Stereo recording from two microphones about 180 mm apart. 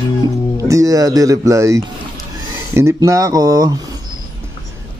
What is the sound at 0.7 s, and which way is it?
Speech, 20° right (ahead or behind).